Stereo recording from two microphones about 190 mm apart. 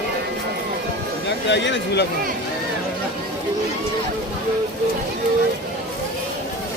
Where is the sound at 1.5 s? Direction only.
70° left (ahead or behind).